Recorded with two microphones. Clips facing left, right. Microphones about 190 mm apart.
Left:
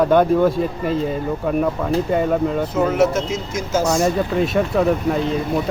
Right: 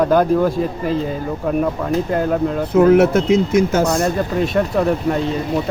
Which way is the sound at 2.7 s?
60° right (ahead or behind).